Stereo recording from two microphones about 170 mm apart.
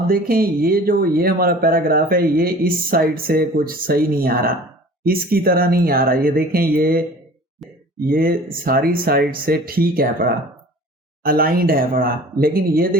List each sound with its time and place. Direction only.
0.1 s speech: 60° right (ahead or behind)
7.6 s a sound: centre (ahead or behind)
7.9 s speech: 60° right (ahead or behind)